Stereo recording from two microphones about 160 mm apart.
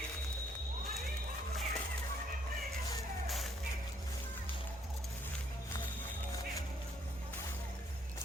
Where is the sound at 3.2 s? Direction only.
Centre (ahead or behind).